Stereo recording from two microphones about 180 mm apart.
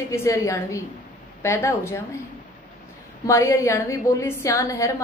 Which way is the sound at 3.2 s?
15° left (ahead or behind).